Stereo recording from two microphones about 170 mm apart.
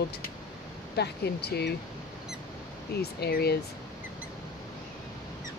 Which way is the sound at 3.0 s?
70° left (ahead or behind).